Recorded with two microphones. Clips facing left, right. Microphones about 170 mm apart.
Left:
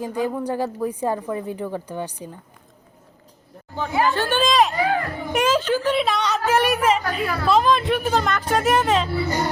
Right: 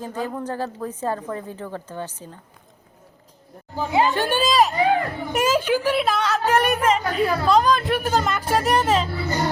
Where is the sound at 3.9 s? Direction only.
20° right (ahead or behind); by 9.1 s centre (ahead or behind).